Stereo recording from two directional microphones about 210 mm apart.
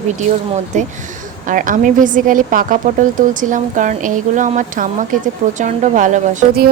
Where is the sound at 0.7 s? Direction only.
35° right (ahead or behind).